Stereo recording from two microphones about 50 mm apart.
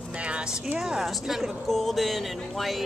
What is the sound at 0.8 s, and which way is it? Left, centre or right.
Speech, centre.